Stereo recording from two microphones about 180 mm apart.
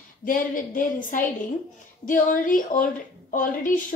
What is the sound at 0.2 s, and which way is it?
A woman's voice, 50° left (ahead or behind).